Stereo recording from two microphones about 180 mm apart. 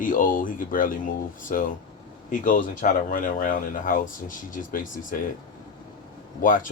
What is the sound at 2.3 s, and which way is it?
Speech, 45° left (ahead or behind).